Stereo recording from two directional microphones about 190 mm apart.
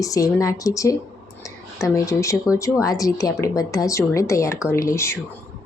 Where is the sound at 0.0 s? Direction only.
15° left (ahead or behind).